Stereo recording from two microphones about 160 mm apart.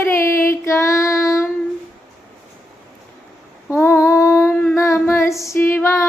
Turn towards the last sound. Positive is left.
turn(degrees=15)  # may be behind; listen again after turning